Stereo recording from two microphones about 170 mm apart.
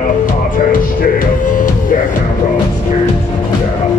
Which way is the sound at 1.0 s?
55° left (ahead or behind).